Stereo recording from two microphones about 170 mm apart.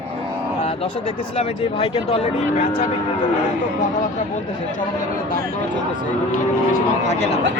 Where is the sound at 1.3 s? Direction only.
35° left (ahead or behind).